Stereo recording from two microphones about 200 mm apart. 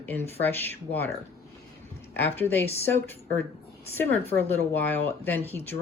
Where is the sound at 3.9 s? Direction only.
10° left (ahead or behind).